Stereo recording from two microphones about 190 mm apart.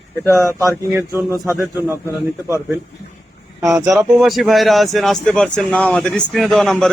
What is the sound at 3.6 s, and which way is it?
Speech, 15° right (ahead or behind).